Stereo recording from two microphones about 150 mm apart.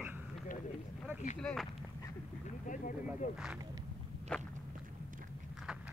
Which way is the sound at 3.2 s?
60° left (ahead or behind).